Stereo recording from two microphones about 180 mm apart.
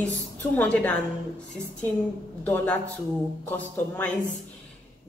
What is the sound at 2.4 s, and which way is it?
A man's voice, 10° left (ahead or behind).